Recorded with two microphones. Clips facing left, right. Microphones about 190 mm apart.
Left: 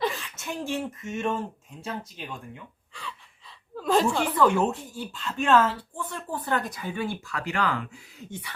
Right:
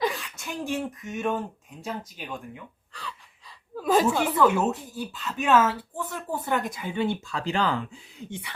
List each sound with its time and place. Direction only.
0.0 s a sound: centre (ahead or behind)
0.7 s speech: centre (ahead or behind)
3.8 s speech: 5° right (ahead or behind); by 8.5 s 20° right (ahead or behind)